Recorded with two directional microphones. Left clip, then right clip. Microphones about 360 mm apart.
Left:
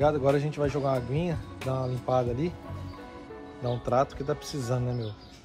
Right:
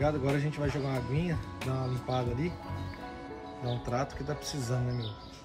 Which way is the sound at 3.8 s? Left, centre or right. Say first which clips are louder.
Left 9 dB; centre.